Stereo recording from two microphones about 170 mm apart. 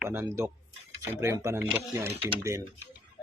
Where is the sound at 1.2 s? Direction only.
15° right (ahead or behind).